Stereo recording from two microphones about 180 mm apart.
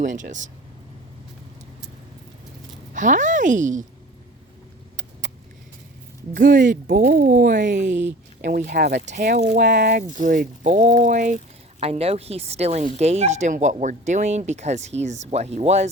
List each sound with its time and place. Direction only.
0.0 s speech: 45° right (ahead or behind)
2.9 s speech: 45° right (ahead or behind)
6.3 s speech: 50° right (ahead or behind)
7.9 s speech: 85° right
8.4 s speech: 55° right (ahead or behind)
10.1 s speech: 45° right (ahead or behind)
11.8 s speech: 35° right (ahead or behind)